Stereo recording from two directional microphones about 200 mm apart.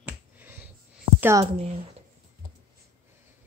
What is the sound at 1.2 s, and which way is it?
Speech, 10° right (ahead or behind).